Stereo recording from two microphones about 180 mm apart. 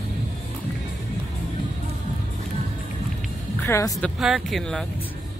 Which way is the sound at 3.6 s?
15° left (ahead or behind).